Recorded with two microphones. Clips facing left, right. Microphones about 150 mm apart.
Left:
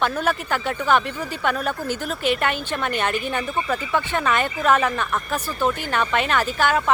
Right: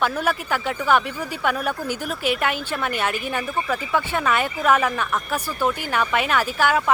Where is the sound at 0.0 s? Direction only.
10° right (ahead or behind).